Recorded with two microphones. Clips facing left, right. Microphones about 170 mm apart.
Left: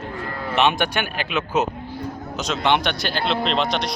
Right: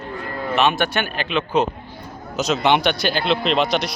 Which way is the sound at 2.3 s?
5° right (ahead or behind).